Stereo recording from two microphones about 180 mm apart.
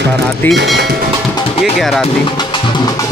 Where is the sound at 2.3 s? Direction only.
25° left (ahead or behind).